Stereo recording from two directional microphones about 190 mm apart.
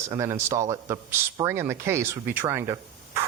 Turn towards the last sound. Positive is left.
turn(degrees=-15)  # may be behind; listen again after turning